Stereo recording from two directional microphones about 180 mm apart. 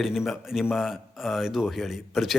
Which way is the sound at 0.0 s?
Centre (ahead or behind).